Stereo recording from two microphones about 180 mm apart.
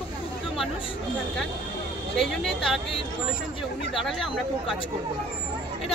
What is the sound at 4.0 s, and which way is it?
Speech, centre (ahead or behind).